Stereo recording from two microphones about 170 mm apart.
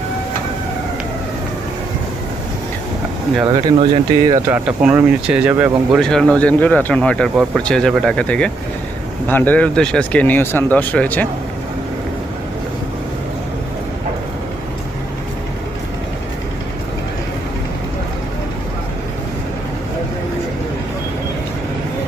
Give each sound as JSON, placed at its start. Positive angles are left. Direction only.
{"t": 3.4, "sound": "speech", "side_deg": -25}
{"t": 4.4, "sound": "speech", "side_deg": -10}